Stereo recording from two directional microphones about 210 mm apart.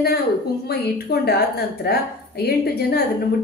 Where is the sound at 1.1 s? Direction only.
50° left (ahead or behind).